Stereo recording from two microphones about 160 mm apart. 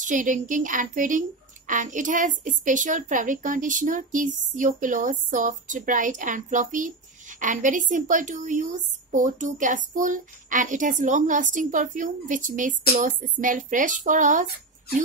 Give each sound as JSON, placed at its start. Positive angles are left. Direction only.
{"t": 0.0, "sound": "a woman's voice", "side_deg": -55}